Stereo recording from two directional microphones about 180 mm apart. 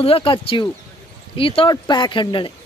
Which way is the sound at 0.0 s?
30° left (ahead or behind).